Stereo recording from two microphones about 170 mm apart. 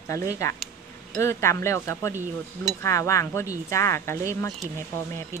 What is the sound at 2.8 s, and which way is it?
Speech, 15° left (ahead or behind).